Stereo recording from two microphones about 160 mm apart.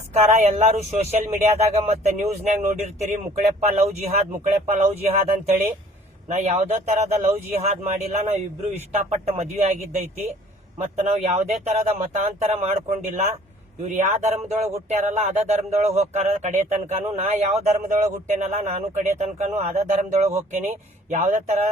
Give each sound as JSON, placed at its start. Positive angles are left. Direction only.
{"t": 0.1, "sound": "speech", "side_deg": -45}
{"t": 13.8, "sound": "speech", "side_deg": -45}